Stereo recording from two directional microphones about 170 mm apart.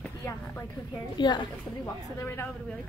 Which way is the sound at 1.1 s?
25° left (ahead or behind).